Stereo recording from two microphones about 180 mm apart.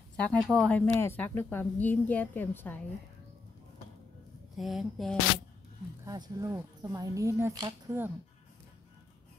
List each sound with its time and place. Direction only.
0.2 s speech: 5° left (ahead or behind)
4.6 s speech: centre (ahead or behind)
6.0 s speech: 20° right (ahead or behind)